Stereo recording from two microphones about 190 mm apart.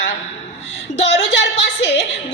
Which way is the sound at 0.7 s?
75° left (ahead or behind).